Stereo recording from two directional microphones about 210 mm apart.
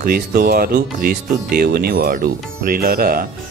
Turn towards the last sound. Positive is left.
turn(degrees=-45)  # may be behind; listen again after turning